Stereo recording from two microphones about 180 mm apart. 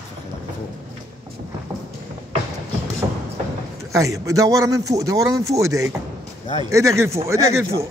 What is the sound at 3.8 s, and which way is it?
Speech, 15° right (ahead or behind).